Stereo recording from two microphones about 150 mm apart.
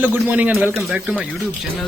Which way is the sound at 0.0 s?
10° right (ahead or behind).